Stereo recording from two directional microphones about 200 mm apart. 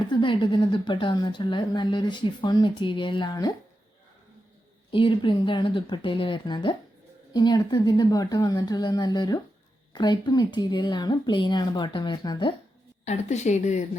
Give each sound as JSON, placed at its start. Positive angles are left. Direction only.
{"t": 0.0, "sound": "a woman's voice", "side_deg": 25}
{"t": 4.9, "sound": "a woman's voice", "side_deg": 25}
{"t": 13.1, "sound": "a woman's voice", "side_deg": 35}